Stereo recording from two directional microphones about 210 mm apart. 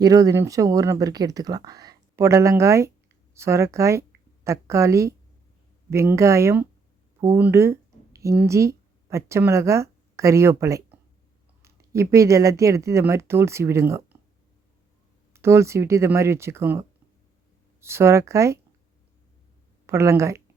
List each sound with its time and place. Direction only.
0.0 s speech: 15° right (ahead or behind)
15.3 s speech: 10° right (ahead or behind)
19.9 s speech: 15° right (ahead or behind)